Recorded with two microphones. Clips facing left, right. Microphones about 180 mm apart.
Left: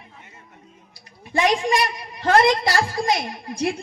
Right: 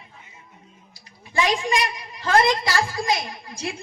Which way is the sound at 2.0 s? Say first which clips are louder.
Left 3 dB; 60° left (ahead or behind).